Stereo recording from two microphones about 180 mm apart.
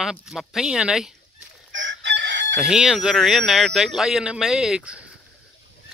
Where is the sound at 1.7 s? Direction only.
90° right.